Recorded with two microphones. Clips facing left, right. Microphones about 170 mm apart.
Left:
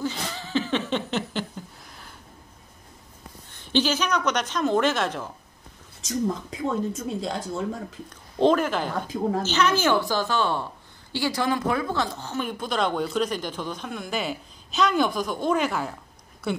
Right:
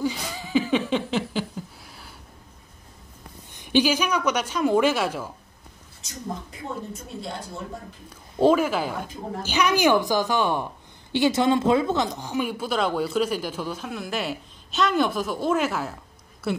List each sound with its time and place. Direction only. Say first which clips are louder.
0.0 s a sound: right 2 dB; 10° right (ahead or behind)
3.5 s a woman's voice: right 3 dB; 15° right (ahead or behind)
6.6 s speech: left 7 dB; 90° left
8.4 s a woman's voice: right 1 dB; 10° right (ahead or behind)